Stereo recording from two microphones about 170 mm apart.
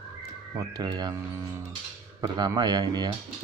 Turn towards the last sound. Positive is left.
turn(degrees=-25)  # may be behind; listen again after turning